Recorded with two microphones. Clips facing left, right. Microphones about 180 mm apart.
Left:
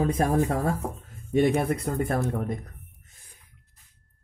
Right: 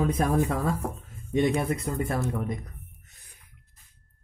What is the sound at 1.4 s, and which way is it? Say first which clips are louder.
Speech: left 2 dB; 55° left (ahead or behind).